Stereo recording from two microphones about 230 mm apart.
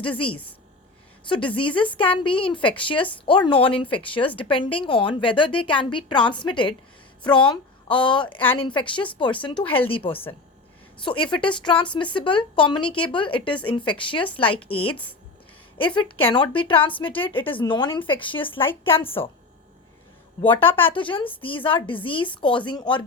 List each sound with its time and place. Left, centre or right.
1.3 s speech: left
16.0 s speech: left
20.7 s speech: centre
20.9 s speech: left